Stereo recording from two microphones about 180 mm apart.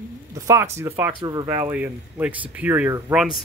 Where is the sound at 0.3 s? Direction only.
15° right (ahead or behind).